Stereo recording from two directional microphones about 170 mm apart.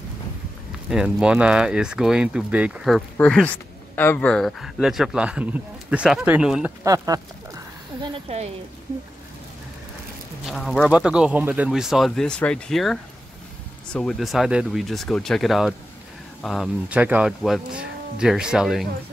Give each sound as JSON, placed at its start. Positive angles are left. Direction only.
{"t": 0.8, "sound": "speech", "side_deg": -5}
{"t": 6.8, "sound": "speech", "side_deg": -20}
{"t": 8.0, "sound": "speech", "side_deg": -35}
{"t": 10.4, "sound": "speech", "side_deg": 0}